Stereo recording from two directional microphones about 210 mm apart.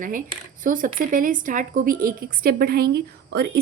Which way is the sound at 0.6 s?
40° right (ahead or behind).